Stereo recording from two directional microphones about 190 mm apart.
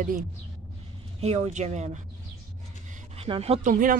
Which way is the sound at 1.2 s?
35° right (ahead or behind).